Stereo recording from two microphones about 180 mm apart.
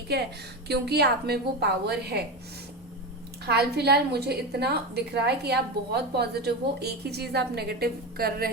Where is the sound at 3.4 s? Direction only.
65° right (ahead or behind).